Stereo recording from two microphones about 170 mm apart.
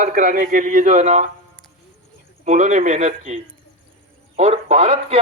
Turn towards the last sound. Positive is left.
turn(degrees=-35)  # may be behind; listen again after turning